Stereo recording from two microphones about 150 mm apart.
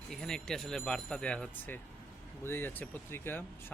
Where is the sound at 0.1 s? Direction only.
5° left (ahead or behind).